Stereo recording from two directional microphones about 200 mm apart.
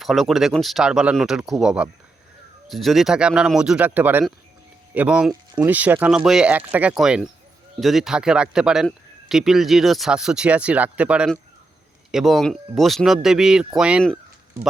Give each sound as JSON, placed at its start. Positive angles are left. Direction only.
{"t": 0.0, "sound": "speech", "side_deg": 0}
{"t": 5.3, "sound": "speech", "side_deg": -20}
{"t": 5.7, "sound": "speech", "side_deg": -10}